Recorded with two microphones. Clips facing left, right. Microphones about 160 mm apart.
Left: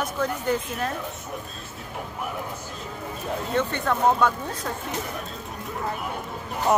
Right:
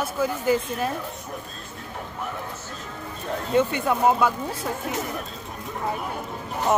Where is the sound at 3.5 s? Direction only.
10° right (ahead or behind).